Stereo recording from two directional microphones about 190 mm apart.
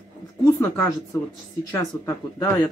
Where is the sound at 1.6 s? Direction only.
20° left (ahead or behind).